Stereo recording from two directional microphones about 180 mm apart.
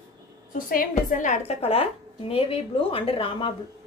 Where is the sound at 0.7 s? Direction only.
50° left (ahead or behind).